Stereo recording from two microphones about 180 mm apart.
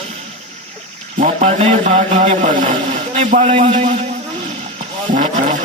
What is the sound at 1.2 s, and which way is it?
Speech, 35° right (ahead or behind).